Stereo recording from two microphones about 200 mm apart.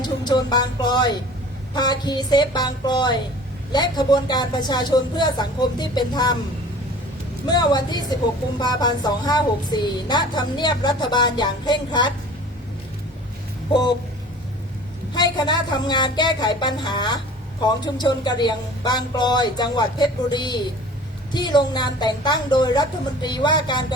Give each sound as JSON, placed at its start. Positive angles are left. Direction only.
{"t": 0.0, "sound": "speech", "side_deg": 20}
{"t": 7.4, "sound": "speech", "side_deg": 20}
{"t": 15.1, "sound": "speech", "side_deg": 20}